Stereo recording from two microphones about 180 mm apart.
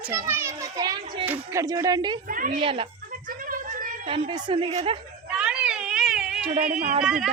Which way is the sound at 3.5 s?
50° right (ahead or behind).